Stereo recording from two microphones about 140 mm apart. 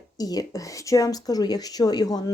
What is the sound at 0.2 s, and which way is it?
Speech, 25° left (ahead or behind).